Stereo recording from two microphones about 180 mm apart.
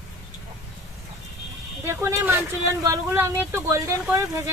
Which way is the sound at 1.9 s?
15° right (ahead or behind).